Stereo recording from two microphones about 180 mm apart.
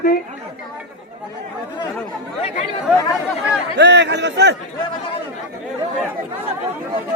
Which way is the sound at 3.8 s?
75° right (ahead or behind).